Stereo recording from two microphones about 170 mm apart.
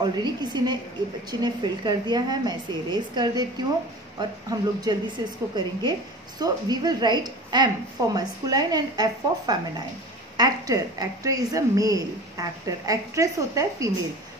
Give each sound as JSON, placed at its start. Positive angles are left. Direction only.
{"t": 0.0, "sound": "a woman's voice", "side_deg": -25}